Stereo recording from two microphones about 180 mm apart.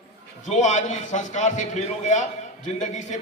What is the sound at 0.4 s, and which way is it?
A man's voice, 40° left (ahead or behind).